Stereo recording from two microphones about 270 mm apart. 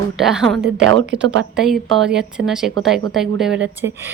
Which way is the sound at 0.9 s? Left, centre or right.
Right.